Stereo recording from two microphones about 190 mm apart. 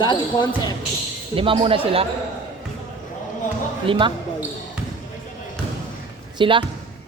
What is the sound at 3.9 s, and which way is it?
Speech, 25° right (ahead or behind).